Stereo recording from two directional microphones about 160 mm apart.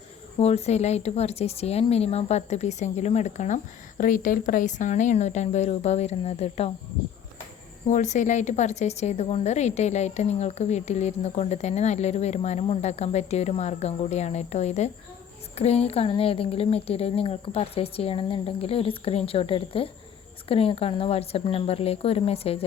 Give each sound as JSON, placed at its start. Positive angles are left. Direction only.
{"t": 0.3, "sound": "a woman's voice", "side_deg": 40}
{"t": 7.9, "sound": "a woman's voice", "side_deg": 50}